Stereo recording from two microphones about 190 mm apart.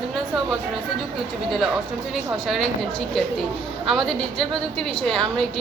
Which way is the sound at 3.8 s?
Centre (ahead or behind).